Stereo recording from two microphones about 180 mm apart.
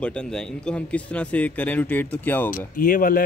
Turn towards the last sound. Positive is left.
turn(degrees=50)  # may be behind; listen again after turning